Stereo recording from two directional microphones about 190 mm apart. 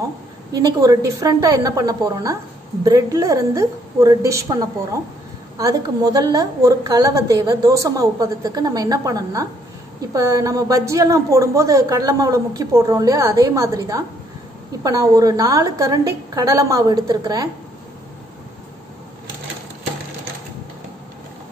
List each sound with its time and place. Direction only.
0.6 s a woman's voice: 20° right (ahead or behind)